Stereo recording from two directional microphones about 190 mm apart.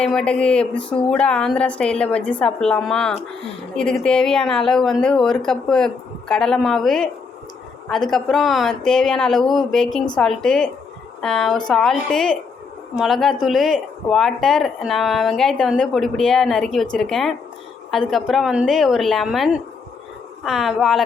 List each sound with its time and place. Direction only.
0.0 s speech: 5° left (ahead or behind)